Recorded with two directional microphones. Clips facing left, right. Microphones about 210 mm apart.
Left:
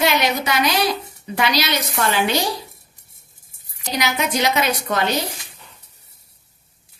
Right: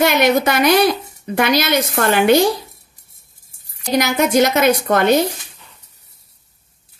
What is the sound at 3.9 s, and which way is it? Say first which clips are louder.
Speech: right 7 dB; 50° right (ahead or behind).